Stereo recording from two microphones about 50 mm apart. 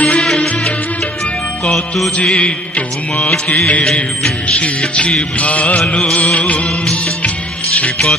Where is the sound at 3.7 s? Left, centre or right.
Left.